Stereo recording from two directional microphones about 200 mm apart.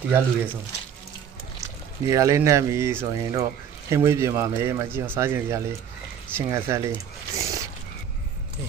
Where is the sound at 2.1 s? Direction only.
15° right (ahead or behind).